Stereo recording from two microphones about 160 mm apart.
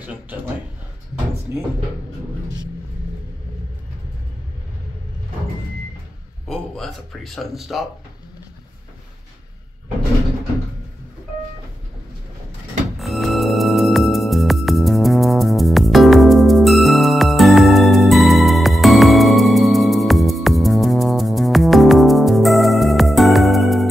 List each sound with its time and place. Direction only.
0.0 s a man's voice: 10° right (ahead or behind)
6.4 s speech: centre (ahead or behind)
13.0 s music: centre (ahead or behind)